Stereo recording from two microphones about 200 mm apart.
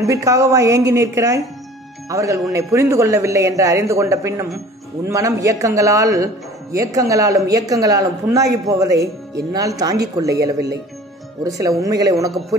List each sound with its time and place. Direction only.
0.0 s a man's voice: 15° right (ahead or behind)
11.4 s a man's voice: 15° right (ahead or behind)
12.3 s a man's voice: centre (ahead or behind)